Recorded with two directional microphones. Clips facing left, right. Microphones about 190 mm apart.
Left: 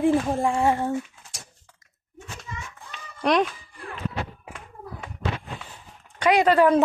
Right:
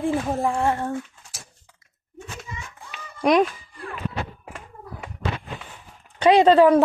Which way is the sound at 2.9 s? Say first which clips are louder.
Right 3 dB; 10° right (ahead or behind).